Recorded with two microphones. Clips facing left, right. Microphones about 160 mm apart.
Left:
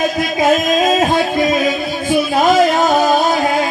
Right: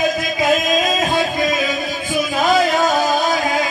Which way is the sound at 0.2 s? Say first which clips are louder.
Left 4 dB; 45° left (ahead or behind).